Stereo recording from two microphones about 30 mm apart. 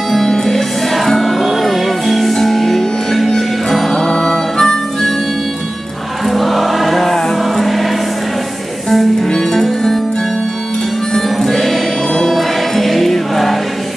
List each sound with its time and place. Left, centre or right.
0.1 s music: centre
4.0 s music: centre
6.2 s music: centre
8.9 s music: centre
9.3 s music: left
11.1 s music: centre